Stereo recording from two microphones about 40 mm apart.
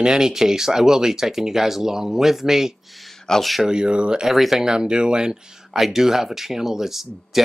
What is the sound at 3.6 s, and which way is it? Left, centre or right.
Speech, right.